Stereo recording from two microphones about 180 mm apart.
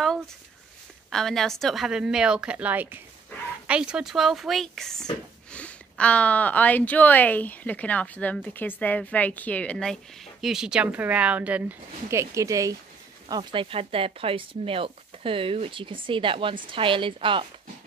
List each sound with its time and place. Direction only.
1.1 s a woman's voice: centre (ahead or behind); by 17.5 s 30° right (ahead or behind)